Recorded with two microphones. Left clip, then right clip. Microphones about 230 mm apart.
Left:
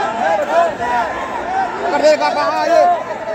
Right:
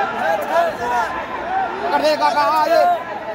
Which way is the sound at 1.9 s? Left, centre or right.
Right.